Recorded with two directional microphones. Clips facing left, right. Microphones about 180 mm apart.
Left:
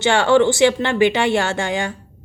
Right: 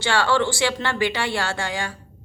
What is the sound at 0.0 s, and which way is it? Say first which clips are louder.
Speech: left 7 dB; 20° left (ahead or behind).